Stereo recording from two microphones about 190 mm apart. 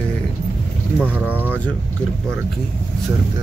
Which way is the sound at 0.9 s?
10° right (ahead or behind).